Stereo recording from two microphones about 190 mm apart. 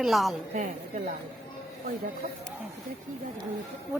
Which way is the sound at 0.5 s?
40° right (ahead or behind).